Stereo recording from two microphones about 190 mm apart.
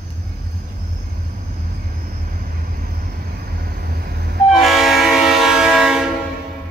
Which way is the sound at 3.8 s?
50° right (ahead or behind).